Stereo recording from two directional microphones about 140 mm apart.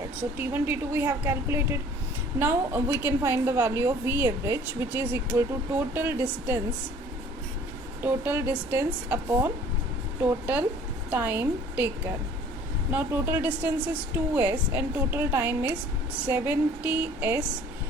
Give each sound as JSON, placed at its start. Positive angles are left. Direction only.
{"t": 0.2, "sound": "a woman's voice", "side_deg": -15}
{"t": 8.0, "sound": "a woman's voice", "side_deg": -15}
{"t": 12.9, "sound": "a woman's voice", "side_deg": -15}